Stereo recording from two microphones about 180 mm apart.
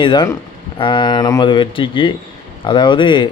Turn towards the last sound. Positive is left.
turn(degrees=25)  # may be behind; listen again after turning